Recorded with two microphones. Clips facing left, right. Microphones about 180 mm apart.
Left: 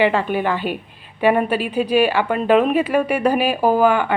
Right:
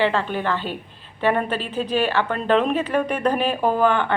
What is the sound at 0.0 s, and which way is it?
A woman's voice, 15° left (ahead or behind).